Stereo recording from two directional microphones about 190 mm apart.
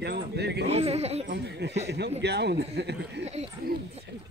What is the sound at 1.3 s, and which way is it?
A man's voice, 60° right (ahead or behind).